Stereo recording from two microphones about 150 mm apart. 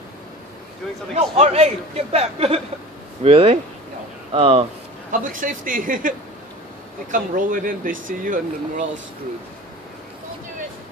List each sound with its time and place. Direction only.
1.1 s a man's voice: 45° right (ahead or behind)
5.2 s speech: 65° right (ahead or behind)